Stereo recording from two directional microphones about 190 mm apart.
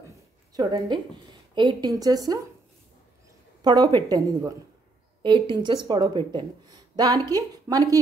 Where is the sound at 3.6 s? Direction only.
20° right (ahead or behind).